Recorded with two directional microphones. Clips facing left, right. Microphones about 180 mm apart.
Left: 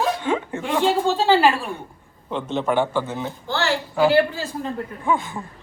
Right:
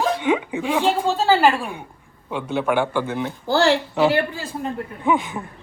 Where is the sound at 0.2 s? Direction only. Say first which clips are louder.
Right 3 dB; 15° right (ahead or behind).